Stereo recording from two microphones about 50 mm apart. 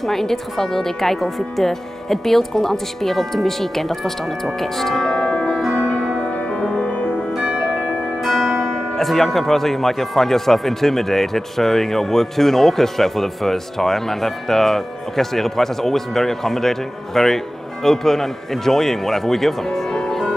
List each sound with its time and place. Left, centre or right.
0.0 s speech: centre
4.6 s music: centre; by 7.2 s left
8.9 s speech: centre